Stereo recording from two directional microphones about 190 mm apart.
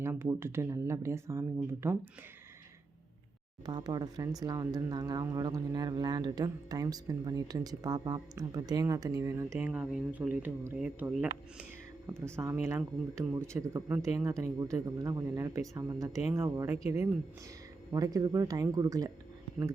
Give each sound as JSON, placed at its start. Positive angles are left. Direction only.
{"t": 0.0, "sound": "speech", "side_deg": -15}
{"t": 3.7, "sound": "speech", "side_deg": -20}